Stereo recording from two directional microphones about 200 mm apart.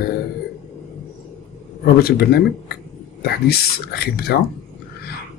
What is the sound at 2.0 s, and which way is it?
Speech, 50° left (ahead or behind).